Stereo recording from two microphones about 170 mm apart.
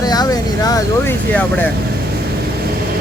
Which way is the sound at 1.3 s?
10° left (ahead or behind).